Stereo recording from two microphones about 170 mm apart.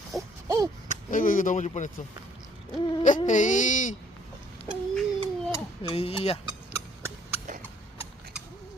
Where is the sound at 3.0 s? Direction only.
50° left (ahead or behind).